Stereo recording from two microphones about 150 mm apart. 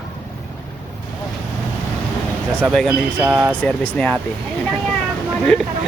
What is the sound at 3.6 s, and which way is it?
Speech, 10° left (ahead or behind).